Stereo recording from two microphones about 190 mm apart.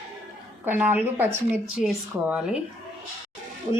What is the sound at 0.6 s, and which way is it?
Speech, 10° right (ahead or behind).